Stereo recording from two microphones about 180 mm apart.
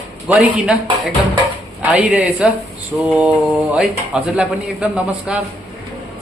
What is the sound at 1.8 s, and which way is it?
Speech, 5° right (ahead or behind).